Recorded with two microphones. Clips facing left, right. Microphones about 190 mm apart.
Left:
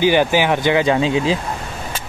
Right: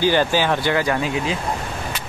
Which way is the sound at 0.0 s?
15° left (ahead or behind).